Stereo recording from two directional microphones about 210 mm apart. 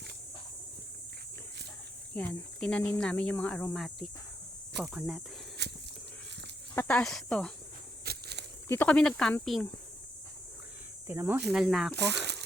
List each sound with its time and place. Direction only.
2.1 s speech: 5° left (ahead or behind)
5.6 s livestock: 55° right (ahead or behind)
6.7 s speech: 5° left (ahead or behind)
8.0 s walk: 50° right (ahead or behind)
8.6 s speech: 10° left (ahead or behind)
11.0 s speech: 10° right (ahead or behind)
11.9 s speech: 55° right (ahead or behind)